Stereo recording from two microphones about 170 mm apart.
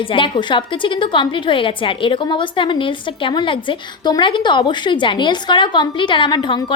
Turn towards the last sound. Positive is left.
turn(degrees=30)  # may be behind; listen again after turning